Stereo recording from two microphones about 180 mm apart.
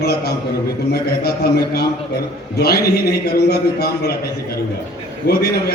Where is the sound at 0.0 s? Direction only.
60° left (ahead or behind).